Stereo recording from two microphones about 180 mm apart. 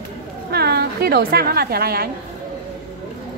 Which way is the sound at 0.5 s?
65° right (ahead or behind).